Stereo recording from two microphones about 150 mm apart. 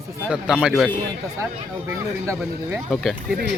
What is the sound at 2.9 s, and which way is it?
Speech, centre (ahead or behind).